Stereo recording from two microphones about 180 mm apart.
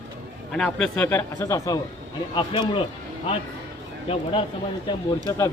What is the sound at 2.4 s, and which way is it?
Speech, 30° left (ahead or behind).